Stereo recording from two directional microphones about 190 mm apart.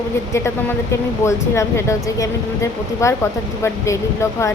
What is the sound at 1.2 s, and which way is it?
Speech, 15° left (ahead or behind).